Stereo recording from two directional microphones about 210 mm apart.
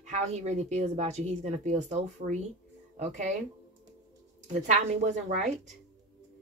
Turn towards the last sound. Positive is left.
turn(degrees=-35)  # may be behind; listen again after turning